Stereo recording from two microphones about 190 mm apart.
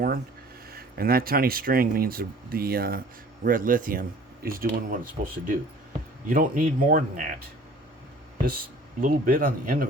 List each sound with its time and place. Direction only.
0.7 s speech: 50° right (ahead or behind)
8.4 s speech: 50° right (ahead or behind)